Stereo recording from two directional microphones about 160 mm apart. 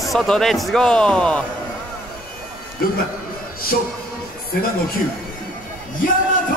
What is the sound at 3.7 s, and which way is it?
Speech, 65° left (ahead or behind).